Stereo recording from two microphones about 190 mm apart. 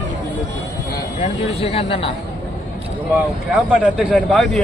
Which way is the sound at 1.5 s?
30° left (ahead or behind).